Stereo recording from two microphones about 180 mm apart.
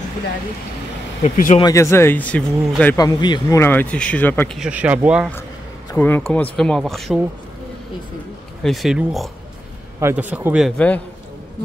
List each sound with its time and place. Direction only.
1.2 s speech: 45° left (ahead or behind)
1.6 s speech: 15° left (ahead or behind)
3.0 s speech: 25° left (ahead or behind)
4.6 s a man's voice: 5° right (ahead or behind)
5.9 s speech: 10° left (ahead or behind)
8.6 s speech: centre (ahead or behind)
9.9 s a man's voice: 10° right (ahead or behind)